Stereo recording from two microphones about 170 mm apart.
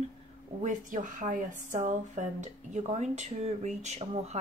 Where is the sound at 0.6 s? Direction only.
50° right (ahead or behind).